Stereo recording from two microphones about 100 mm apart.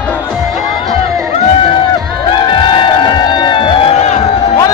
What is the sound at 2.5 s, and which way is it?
Music, 50° left (ahead or behind).